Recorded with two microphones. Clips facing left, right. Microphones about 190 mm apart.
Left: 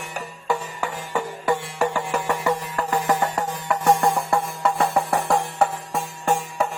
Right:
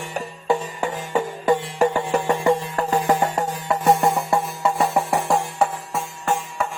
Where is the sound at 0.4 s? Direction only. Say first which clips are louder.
Right 4 dB; 20° right (ahead or behind).